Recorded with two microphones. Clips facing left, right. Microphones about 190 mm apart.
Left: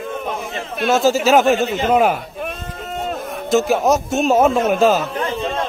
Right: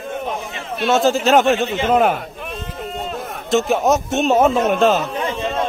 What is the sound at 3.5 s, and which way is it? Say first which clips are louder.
A man's voice: left 1 dB; centre (ahead or behind).